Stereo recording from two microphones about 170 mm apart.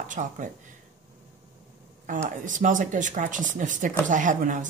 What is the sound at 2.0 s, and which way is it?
Speech, 50° right (ahead or behind).